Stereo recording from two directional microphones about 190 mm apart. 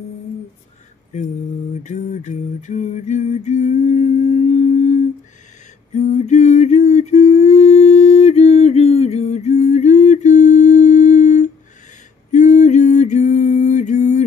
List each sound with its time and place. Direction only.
1.1 s mantra: 35° left (ahead or behind)
1.8 s a sound: 40° left (ahead or behind)
12.3 s music: 40° left (ahead or behind)